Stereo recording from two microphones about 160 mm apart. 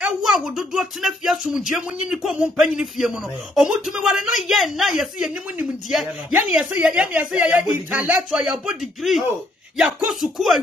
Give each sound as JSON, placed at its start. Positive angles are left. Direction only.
{"t": 0.0, "sound": "speech", "side_deg": 0}